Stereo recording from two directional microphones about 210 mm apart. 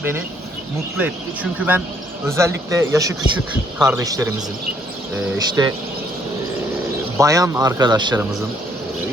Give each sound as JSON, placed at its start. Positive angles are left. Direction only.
{"t": 0.9, "sound": "speech", "side_deg": -5}
{"t": 7.2, "sound": "speech", "side_deg": -15}